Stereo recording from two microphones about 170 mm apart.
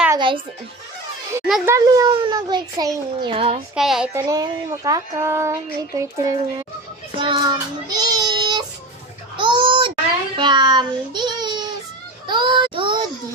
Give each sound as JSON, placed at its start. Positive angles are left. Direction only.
{"t": 0.2, "sound": "music", "side_deg": -30}
{"t": 1.6, "sound": "speech", "side_deg": -20}
{"t": 3.8, "sound": "speech", "side_deg": 0}
{"t": 4.1, "sound": "speech", "side_deg": -20}
{"t": 7.2, "sound": "child singing", "side_deg": -25}
{"t": 9.4, "sound": "a sound", "side_deg": -30}
{"t": 10.3, "sound": "a child's voice", "side_deg": -25}
{"t": 12.3, "sound": "a sound", "side_deg": -30}